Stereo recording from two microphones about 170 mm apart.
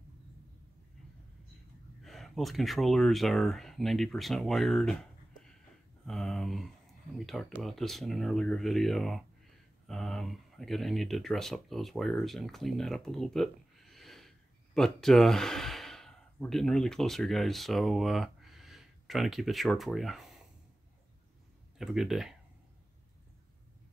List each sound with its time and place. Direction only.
2.0 s speech: centre (ahead or behind)
6.0 s a sound: centre (ahead or behind)
7.2 s speech: centre (ahead or behind)
21.7 s speech: centre (ahead or behind)